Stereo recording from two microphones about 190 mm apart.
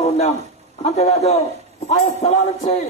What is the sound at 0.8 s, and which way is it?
A man's voice, 35° left (ahead or behind).